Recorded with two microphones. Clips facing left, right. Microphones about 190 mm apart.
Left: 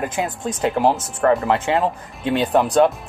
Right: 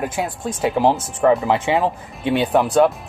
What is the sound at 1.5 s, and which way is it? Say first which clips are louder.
Speech: right 1 dB; 10° right (ahead or behind).